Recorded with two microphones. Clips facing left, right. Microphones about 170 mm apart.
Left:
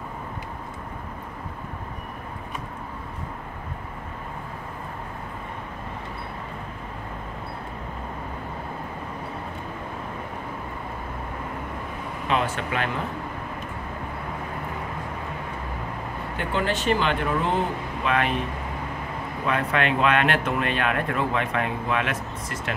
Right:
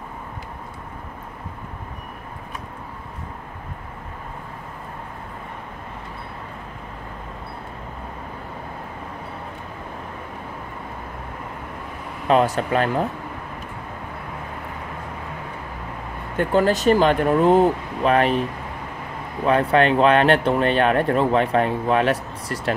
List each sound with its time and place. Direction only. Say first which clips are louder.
12.3 s speech: right 8 dB; 40° right (ahead or behind)
16.3 s speech: right 8 dB; 40° right (ahead or behind)
19.4 s speech: right 7 dB; 35° right (ahead or behind)